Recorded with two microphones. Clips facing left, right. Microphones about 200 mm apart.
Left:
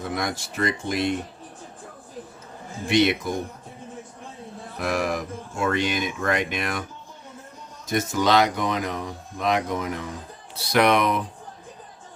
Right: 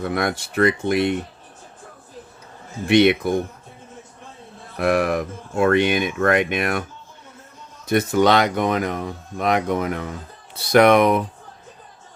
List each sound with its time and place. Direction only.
0.0 s speech: 60° right (ahead or behind)
2.9 s speech: 60° right (ahead or behind)
4.8 s speech: 60° right (ahead or behind)
7.9 s speech: 60° right (ahead or behind)